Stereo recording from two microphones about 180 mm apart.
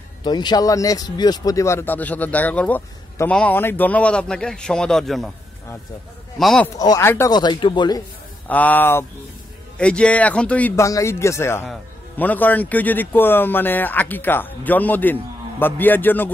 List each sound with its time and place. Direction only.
0.2 s speech: 25° left (ahead or behind); by 5.3 s centre (ahead or behind)
6.3 s speech: 5° left (ahead or behind)
6.8 s speech: 15° left (ahead or behind)
8.5 s speech: 10° left (ahead or behind)